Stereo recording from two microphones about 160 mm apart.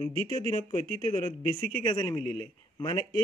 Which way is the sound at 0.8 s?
50° right (ahead or behind).